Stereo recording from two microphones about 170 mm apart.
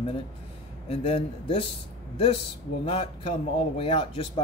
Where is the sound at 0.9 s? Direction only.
35° left (ahead or behind).